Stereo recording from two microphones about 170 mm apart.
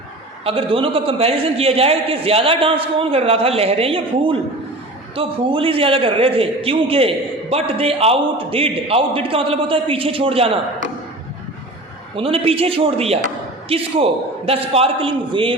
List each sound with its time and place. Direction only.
0.4 s a man's voice: 30° right (ahead or behind)
12.1 s a man's voice: 35° right (ahead or behind)